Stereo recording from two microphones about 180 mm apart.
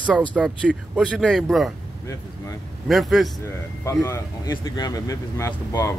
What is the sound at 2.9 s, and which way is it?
Speech, centre (ahead or behind).